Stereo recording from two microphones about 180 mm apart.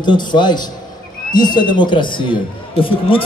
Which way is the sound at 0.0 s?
25° left (ahead or behind).